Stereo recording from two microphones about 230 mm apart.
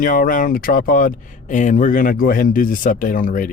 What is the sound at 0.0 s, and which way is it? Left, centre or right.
Speech, left.